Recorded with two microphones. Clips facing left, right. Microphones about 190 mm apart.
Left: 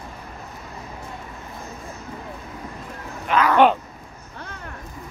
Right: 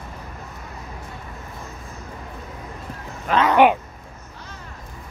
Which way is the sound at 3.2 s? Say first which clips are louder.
Right 1 dB; 30° right (ahead or behind).